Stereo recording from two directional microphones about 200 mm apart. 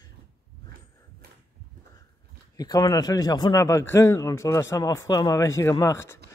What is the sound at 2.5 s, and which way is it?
A man's voice, 20° left (ahead or behind).